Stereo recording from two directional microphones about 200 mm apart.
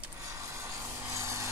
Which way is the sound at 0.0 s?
15° right (ahead or behind).